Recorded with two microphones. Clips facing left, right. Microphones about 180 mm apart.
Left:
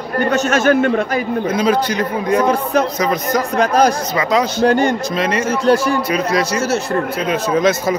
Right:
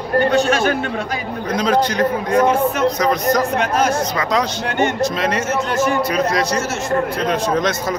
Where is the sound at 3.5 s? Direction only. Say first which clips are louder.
Left 4 dB; 35° left (ahead or behind).